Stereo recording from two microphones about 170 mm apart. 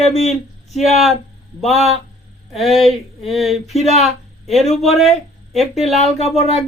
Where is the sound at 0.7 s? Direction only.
Centre (ahead or behind).